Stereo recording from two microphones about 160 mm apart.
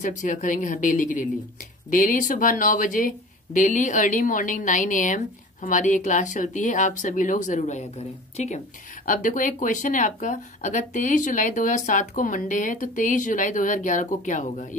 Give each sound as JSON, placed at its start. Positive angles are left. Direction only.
{"t": 0.0, "sound": "speech", "side_deg": 50}
{"t": 9.0, "sound": "speech", "side_deg": 55}